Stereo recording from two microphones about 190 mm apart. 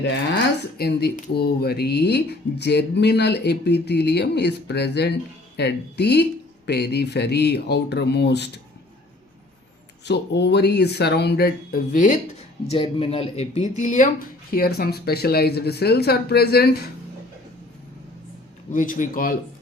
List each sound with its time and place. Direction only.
0.0 s speech: 65° left (ahead or behind)
10.1 s speech: 60° left (ahead or behind); by 12.2 s 45° left (ahead or behind)
12.7 s a man's voice: 30° left (ahead or behind)
14.5 s speech: 55° left (ahead or behind)
18.7 s a man's voice: 45° left (ahead or behind)